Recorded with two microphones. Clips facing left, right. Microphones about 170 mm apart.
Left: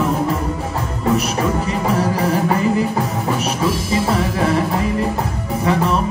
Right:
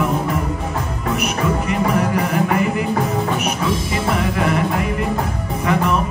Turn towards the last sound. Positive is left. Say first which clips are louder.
# left 1 dB
turn(degrees=30)  # may be behind; listen again after turning